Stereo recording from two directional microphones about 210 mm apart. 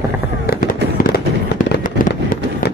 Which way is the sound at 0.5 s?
45° left (ahead or behind).